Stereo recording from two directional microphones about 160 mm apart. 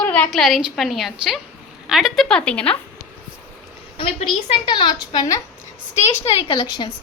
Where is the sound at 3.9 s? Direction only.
35° left (ahead or behind).